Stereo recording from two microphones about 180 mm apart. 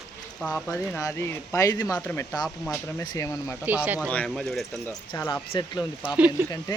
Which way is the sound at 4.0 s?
5° left (ahead or behind).